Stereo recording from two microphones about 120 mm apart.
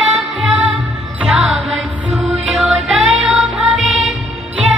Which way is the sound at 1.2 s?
5° right (ahead or behind).